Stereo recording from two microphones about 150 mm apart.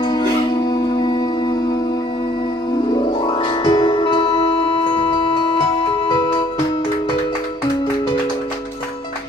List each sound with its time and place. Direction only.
0.0 s music: 30° left (ahead or behind)
2.9 s music: 30° left (ahead or behind)